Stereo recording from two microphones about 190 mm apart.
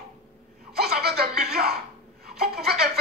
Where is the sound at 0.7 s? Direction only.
55° right (ahead or behind).